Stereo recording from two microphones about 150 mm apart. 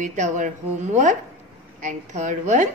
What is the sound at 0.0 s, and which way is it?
Speech, 55° right (ahead or behind).